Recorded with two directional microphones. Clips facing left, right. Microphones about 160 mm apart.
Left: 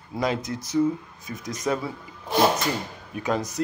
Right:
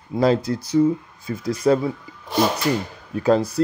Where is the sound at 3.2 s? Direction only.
30° right (ahead or behind).